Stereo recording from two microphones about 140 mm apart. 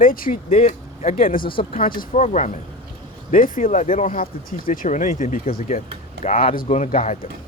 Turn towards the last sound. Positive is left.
turn(degrees=55)  # may be behind; listen again after turning